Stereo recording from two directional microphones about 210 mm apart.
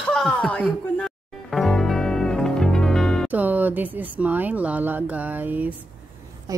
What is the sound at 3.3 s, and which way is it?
Speech, 10° right (ahead or behind).